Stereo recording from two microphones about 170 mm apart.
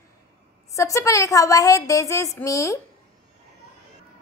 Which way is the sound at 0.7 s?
20° left (ahead or behind).